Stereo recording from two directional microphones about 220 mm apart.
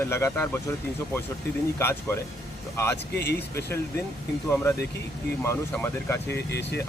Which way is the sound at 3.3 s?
10° left (ahead or behind).